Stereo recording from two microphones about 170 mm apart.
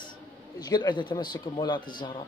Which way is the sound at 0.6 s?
25° left (ahead or behind).